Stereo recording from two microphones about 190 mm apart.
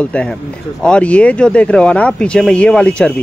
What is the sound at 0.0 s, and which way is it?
Speech, 5° left (ahead or behind).